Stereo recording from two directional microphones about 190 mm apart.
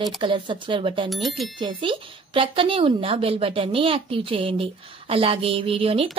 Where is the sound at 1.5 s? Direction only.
25° right (ahead or behind).